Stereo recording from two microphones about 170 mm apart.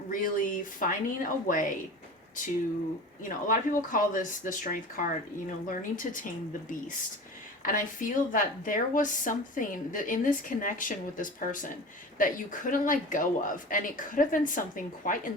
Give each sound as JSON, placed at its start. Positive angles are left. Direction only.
{"t": 0.1, "sound": "a woman's voice", "side_deg": 50}
{"t": 3.2, "sound": "a woman's voice", "side_deg": 50}
{"t": 7.6, "sound": "a woman's voice", "side_deg": 55}